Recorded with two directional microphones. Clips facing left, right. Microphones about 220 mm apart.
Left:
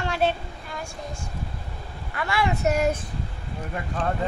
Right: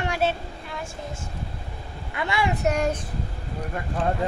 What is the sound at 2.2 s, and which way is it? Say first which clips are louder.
Speech: even; 20° right (ahead or behind).